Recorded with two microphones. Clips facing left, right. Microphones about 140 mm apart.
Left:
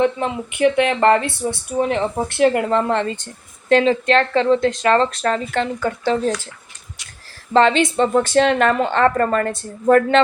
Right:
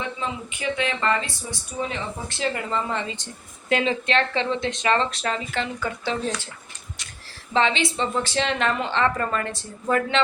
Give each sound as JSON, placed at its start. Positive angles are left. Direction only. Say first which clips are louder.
{"t": 0.0, "sound": "speech", "louder": "left 11 dB", "side_deg": 60}
{"t": 3.8, "sound": "speech", "louder": "left 7 dB", "side_deg": 40}
{"t": 7.5, "sound": "speech", "louder": "left 8 dB", "side_deg": 45}